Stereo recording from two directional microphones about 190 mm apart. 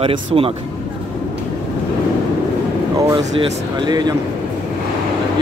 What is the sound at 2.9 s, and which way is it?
Speech, 20° right (ahead or behind).